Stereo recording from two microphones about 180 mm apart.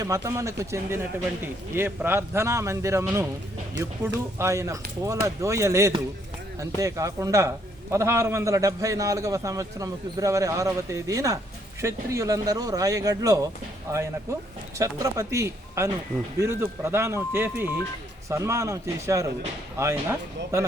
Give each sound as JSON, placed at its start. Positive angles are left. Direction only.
{"t": 0.0, "sound": "a man's voice", "side_deg": -15}
{"t": 14.8, "sound": "a man's voice", "side_deg": -20}